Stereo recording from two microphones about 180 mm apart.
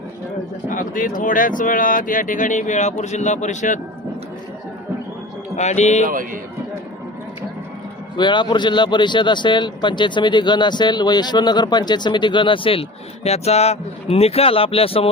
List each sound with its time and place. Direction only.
0.7 s speech: 45° left (ahead or behind)
5.5 s speech: 40° left (ahead or behind)
6.1 s a man's voice: 50° right (ahead or behind)
8.1 s a man's voice: 25° left (ahead or behind)